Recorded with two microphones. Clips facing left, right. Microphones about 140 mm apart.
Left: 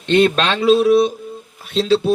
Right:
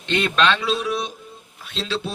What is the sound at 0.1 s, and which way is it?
A man's voice, 35° left (ahead or behind).